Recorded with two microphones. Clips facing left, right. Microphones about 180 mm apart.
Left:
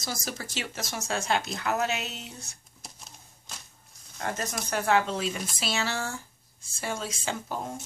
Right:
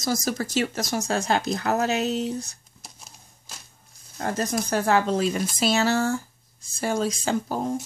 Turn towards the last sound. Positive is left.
turn(degrees=-40)  # may be behind; listen again after turning